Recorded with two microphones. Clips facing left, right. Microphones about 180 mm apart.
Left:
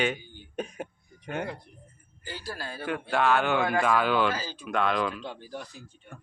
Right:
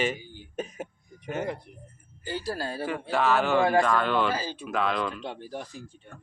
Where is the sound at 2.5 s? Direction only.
35° right (ahead or behind).